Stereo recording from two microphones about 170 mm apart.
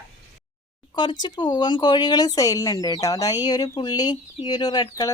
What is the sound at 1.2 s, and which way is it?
Speech, 25° left (ahead or behind).